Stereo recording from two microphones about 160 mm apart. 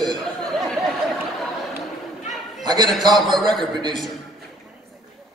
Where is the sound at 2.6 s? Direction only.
25° right (ahead or behind).